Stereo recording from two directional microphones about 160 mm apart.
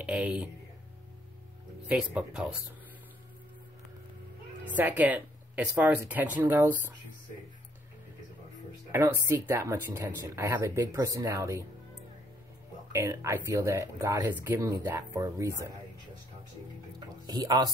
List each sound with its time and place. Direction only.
0.0 s speech: 5° right (ahead or behind)
1.9 s speech: 5° right (ahead or behind)
4.7 s speech: 10° right (ahead or behind)
8.9 s speech: 15° right (ahead or behind)
12.9 s speech: 15° right (ahead or behind)
17.3 s speech: 25° right (ahead or behind)